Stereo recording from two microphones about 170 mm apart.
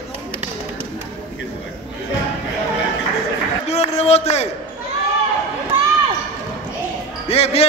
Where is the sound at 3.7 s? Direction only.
40° left (ahead or behind).